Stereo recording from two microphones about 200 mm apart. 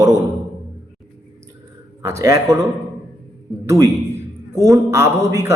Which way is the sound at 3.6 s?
15° right (ahead or behind).